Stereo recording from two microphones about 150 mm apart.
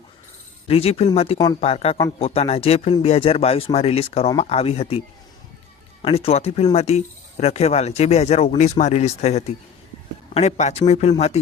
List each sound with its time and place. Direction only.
0.7 s speech: 40° left (ahead or behind)